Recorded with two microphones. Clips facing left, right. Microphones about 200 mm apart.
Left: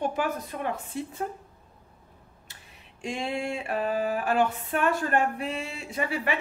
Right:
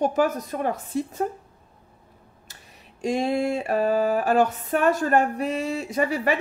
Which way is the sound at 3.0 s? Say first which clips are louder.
Right 8 dB; 40° right (ahead or behind).